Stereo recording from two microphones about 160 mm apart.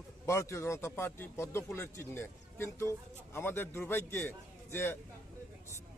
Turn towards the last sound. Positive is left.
turn(degrees=15)  # may be behind; listen again after turning